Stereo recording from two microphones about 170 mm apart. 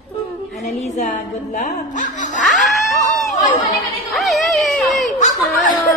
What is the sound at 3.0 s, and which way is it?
Chatter, 45° left (ahead or behind).